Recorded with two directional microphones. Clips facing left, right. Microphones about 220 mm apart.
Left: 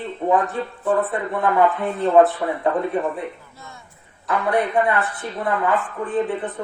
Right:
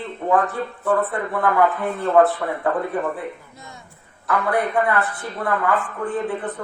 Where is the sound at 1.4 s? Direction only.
20° left (ahead or behind).